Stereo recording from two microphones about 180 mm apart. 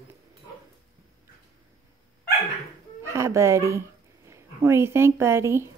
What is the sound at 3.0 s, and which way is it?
Speech, 15° right (ahead or behind).